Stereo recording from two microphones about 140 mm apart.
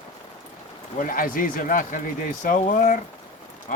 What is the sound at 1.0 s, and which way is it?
Speech, 85° left.